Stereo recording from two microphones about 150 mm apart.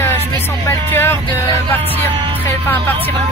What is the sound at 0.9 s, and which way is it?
Speech, 15° left (ahead or behind).